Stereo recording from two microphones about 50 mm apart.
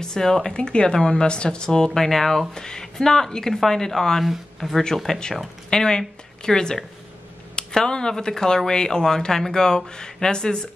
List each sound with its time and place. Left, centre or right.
0.0 s speech: centre
4.2 s a woman's voice: centre